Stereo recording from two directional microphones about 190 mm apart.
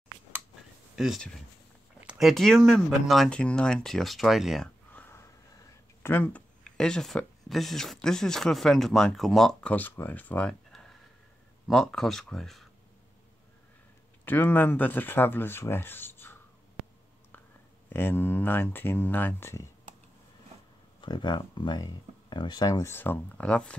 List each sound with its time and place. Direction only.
0.9 s speech: centre (ahead or behind)
14.2 s speech: 10° left (ahead or behind)
17.8 s speech: 10° left (ahead or behind)
21.0 s speech: 25° left (ahead or behind); by 23.8 s 5° left (ahead or behind)